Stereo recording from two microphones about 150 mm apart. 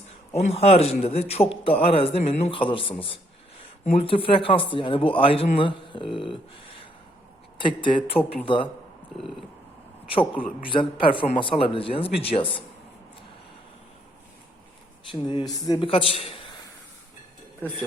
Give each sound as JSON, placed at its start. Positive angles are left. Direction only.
{"t": 0.3, "sound": "speech", "side_deg": 45}
{"t": 10.1, "sound": "speech", "side_deg": 35}
{"t": 15.1, "sound": "a man's voice", "side_deg": 30}
{"t": 15.9, "sound": "speech", "side_deg": 40}